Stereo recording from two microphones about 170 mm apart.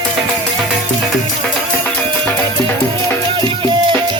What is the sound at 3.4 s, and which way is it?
Music, 30° right (ahead or behind).